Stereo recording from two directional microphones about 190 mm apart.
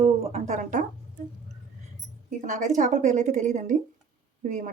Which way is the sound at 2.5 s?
40° right (ahead or behind).